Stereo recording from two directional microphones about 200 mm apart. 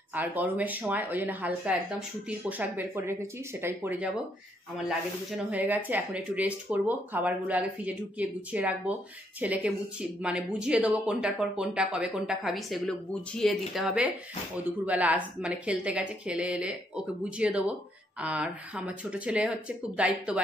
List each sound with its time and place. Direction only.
0.1 s speech: 10° right (ahead or behind)